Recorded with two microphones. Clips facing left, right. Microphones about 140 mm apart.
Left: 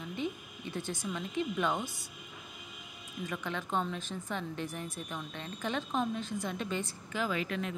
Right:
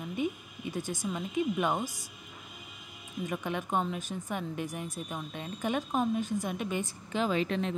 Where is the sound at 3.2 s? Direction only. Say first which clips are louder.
Right 3 dB; 20° right (ahead or behind).